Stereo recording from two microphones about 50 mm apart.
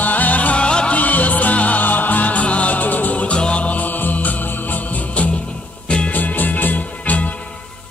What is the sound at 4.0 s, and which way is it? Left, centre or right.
Mantra, left.